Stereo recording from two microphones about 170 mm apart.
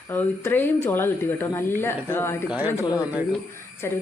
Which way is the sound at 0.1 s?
10° left (ahead or behind).